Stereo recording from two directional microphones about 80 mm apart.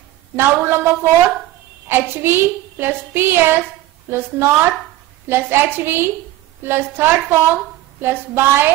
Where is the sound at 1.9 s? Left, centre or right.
Right.